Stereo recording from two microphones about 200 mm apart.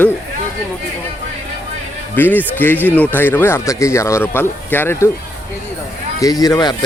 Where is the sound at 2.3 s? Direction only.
10° left (ahead or behind).